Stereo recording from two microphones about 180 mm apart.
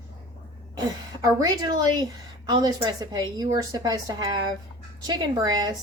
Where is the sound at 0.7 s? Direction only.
20° right (ahead or behind).